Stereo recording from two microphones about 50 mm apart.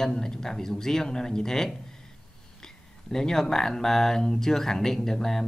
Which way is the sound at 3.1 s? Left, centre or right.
Centre.